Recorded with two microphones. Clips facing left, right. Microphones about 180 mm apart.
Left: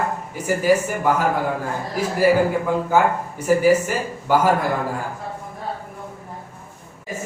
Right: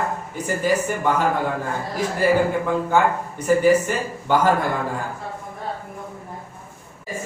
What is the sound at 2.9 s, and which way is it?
A man's voice, 10° left (ahead or behind).